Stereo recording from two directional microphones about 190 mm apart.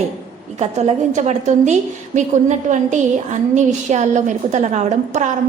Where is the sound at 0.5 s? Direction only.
35° right (ahead or behind).